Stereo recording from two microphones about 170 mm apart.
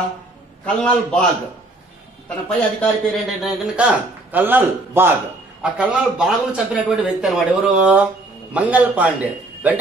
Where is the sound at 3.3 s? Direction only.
5° right (ahead or behind).